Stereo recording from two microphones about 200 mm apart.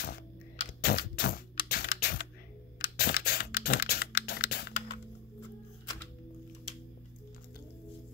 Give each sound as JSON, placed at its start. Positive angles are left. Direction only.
{"t": 0.0, "sound": "typing", "side_deg": 50}